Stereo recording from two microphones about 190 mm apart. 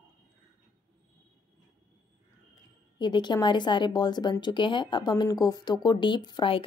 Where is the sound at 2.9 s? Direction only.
25° left (ahead or behind).